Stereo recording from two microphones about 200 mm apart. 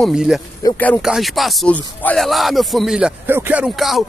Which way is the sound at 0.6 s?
20° left (ahead or behind).